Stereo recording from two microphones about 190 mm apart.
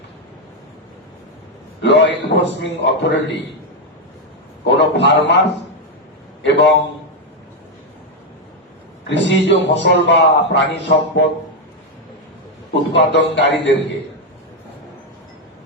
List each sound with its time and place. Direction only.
1.8 s a man's voice: 65° left (ahead or behind)
4.8 s a man's voice: 65° left (ahead or behind)
9.0 s a man's voice: 70° left (ahead or behind)
12.9 s a man's voice: 70° left (ahead or behind)